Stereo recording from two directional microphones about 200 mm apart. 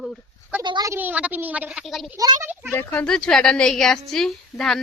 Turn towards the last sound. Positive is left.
turn(degrees=0)  # may be behind; listen again after turning